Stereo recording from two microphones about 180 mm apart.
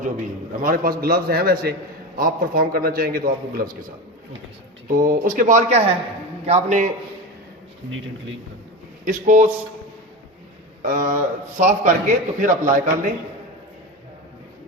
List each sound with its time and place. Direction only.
0.6 s a man's voice: 55° right (ahead or behind)
4.9 s a man's voice: 45° right (ahead or behind)
9.0 s a man's voice: 45° right (ahead or behind)
10.8 s a man's voice: 50° right (ahead or behind)